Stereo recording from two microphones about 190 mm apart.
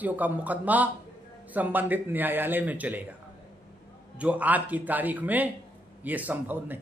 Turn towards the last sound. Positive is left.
turn(degrees=-10)  # may be behind; listen again after turning